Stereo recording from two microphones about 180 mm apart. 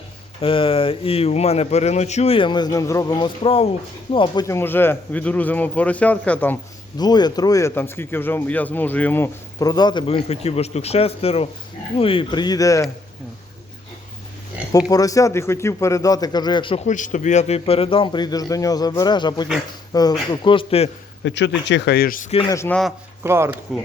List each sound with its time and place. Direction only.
0.4 s speech: 30° left (ahead or behind)
4.4 s a man's voice: 15° left (ahead or behind)
7.0 s speech: 25° left (ahead or behind)
14.7 s speech: 20° left (ahead or behind)
16.8 s speech: 45° left (ahead or behind)
21.2 s speech: 80° left; by 22.3 s 50° left (ahead or behind)
22.4 s a man's voice: 15° left (ahead or behind)
23.2 s speech: 15° right (ahead or behind)